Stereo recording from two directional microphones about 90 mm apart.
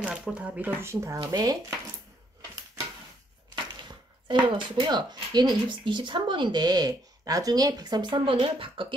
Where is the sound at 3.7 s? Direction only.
55° right (ahead or behind); by 8.9 s 75° right (ahead or behind).